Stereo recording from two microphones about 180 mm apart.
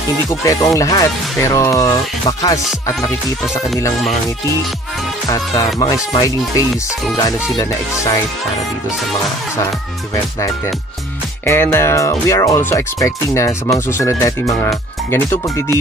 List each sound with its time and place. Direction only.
0.3 s speech: 15° left (ahead or behind)
5.8 s music: 20° left (ahead or behind)
11.4 s speech: 15° left (ahead or behind)